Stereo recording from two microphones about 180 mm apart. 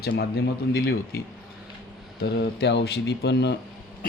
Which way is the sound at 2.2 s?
65° left (ahead or behind).